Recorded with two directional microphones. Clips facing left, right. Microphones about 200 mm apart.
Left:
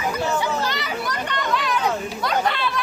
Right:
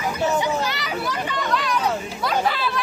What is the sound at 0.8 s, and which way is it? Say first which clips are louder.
Chatter: even; centre (ahead or behind).